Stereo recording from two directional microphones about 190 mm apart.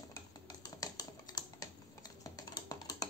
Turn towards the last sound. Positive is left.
turn(degrees=20)  # may be behind; listen again after turning